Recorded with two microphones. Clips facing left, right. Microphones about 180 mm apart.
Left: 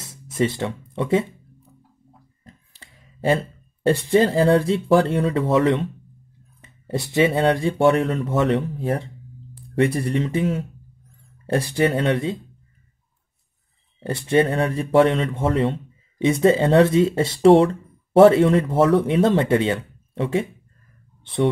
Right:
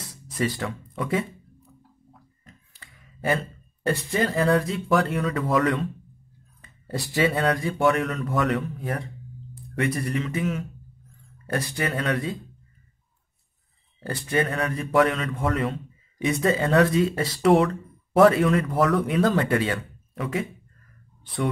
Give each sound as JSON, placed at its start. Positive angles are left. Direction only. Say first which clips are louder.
{"t": 0.0, "sound": "speech", "louder": "left 5 dB", "side_deg": 25}
{"t": 2.4, "sound": "speech", "louder": "left 4 dB", "side_deg": 30}
{"t": 13.9, "sound": "speech", "louder": "left 6 dB", "side_deg": 25}
{"t": 21.2, "sound": "a sound", "louder": "left 7 dB", "side_deg": 25}